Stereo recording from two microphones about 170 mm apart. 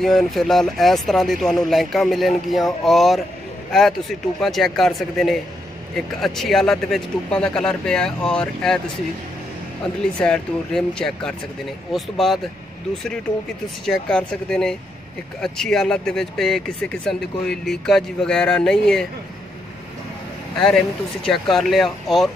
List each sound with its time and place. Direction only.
0.0 s speech: centre (ahead or behind)
4.4 s speech: centre (ahead or behind)
10.1 s speech: 5° left (ahead or behind)
13.8 s speech: 5° left (ahead or behind)
20.5 s speech: 5° left (ahead or behind)